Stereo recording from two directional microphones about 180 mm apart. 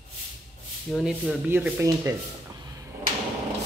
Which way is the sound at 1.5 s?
15° right (ahead or behind).